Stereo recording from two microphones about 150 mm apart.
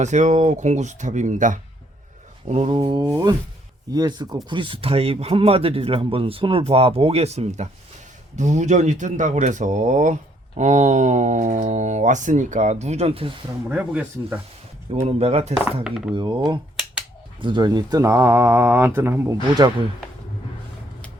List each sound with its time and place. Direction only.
0.0 s speech: 50° right (ahead or behind)
2.7 s speech: 30° right (ahead or behind)
13.7 s speech: 10° right (ahead or behind)
15.0 s speech: 45° right (ahead or behind)
15.8 s speech: 5° right (ahead or behind)
16.1 s speech: 30° right (ahead or behind)